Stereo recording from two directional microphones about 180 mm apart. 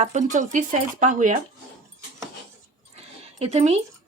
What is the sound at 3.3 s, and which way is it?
Speech, 40° right (ahead or behind).